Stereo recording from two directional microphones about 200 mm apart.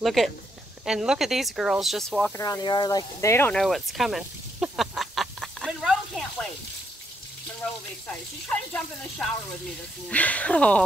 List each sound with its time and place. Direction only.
0.0 s speech: centre (ahead or behind)
2.3 s speech: 20° left (ahead or behind)
3.6 s duck: centre (ahead or behind)
8.1 s speech: 5° left (ahead or behind)
10.0 s speech: 5° left (ahead or behind)